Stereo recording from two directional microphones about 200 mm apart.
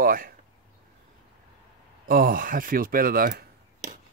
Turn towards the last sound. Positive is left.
turn(degrees=-45)  # may be behind; listen again after turning